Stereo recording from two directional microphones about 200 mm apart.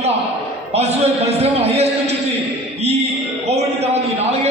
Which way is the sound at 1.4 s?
30° right (ahead or behind).